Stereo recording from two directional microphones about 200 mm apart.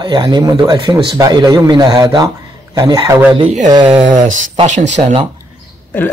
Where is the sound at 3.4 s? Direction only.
35° right (ahead or behind).